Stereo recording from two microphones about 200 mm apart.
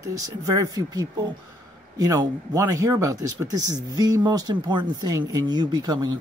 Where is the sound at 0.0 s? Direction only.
15° right (ahead or behind).